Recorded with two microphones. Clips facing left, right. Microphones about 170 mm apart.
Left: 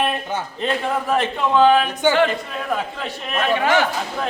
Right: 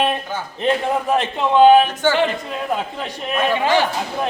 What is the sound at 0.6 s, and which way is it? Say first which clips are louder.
A man's voice: right 4 dB; 20° right (ahead or behind).